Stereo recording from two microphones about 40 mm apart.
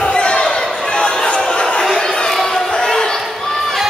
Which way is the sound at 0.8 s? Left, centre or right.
Centre.